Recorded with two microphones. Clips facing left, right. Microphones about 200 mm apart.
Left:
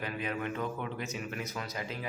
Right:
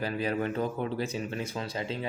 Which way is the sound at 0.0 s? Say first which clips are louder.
Right 6 dB; 35° right (ahead or behind).